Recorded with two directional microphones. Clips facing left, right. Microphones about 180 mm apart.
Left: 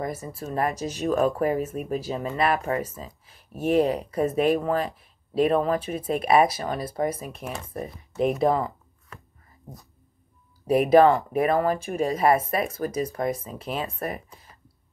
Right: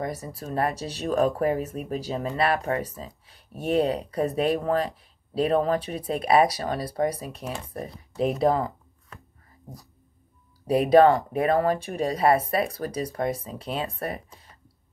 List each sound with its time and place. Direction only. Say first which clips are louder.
0.0 s speech: left 1 dB; 35° right (ahead or behind)
8.4 s a sound: even; 35° right (ahead or behind)
10.7 s speech: even; 30° right (ahead or behind)